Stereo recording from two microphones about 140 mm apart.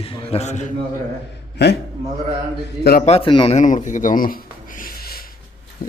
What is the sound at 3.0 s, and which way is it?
Speech, 45° left (ahead or behind).